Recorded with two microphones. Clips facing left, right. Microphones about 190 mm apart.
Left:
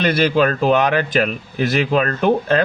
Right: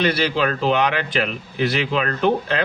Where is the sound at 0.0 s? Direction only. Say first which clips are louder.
Left 4 dB; 50° left (ahead or behind).